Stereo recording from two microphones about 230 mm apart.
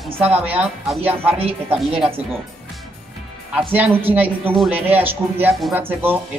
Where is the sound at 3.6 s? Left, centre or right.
Centre.